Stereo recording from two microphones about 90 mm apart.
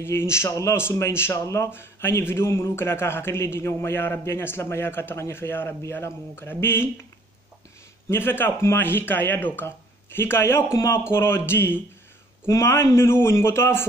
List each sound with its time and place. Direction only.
0.0 s speech: 30° left (ahead or behind)
8.1 s speech: 25° left (ahead or behind)